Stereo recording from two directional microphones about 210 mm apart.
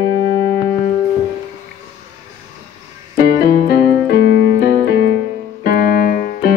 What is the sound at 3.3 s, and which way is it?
Keyboard, 40° left (ahead or behind).